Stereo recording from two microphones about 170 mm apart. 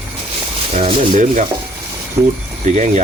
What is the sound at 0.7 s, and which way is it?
Speech, 45° right (ahead or behind).